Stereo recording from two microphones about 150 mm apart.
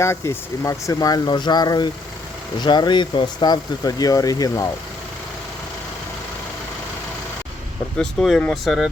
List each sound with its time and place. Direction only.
0.0 s speech: 20° left (ahead or behind)
7.9 s speech: 5° left (ahead or behind)